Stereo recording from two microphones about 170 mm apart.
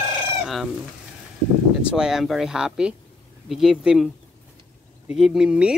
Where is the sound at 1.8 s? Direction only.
5° right (ahead or behind).